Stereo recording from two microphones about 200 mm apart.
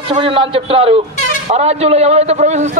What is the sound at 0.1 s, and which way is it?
A man's voice, 25° right (ahead or behind).